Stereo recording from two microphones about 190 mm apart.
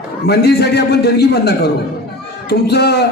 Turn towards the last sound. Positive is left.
turn(degrees=60)  # may be behind; listen again after turning